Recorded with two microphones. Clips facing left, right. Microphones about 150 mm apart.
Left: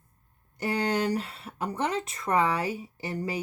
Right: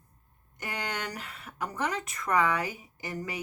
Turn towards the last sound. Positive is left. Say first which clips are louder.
# left 4 dB
turn(degrees=30)  # may be behind; listen again after turning